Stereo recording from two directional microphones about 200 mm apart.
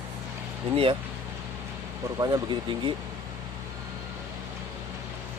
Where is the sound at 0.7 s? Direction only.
25° right (ahead or behind).